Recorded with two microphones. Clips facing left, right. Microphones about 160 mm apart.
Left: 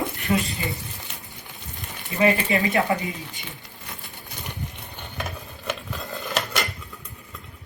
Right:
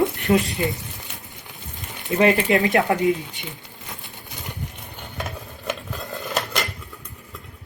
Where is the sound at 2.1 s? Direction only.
75° right (ahead or behind).